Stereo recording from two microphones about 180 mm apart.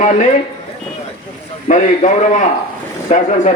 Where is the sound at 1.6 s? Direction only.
40° left (ahead or behind).